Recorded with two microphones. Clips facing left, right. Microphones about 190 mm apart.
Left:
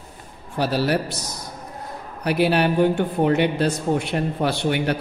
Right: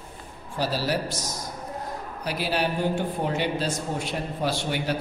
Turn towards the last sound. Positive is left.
turn(degrees=60)  # may be behind; listen again after turning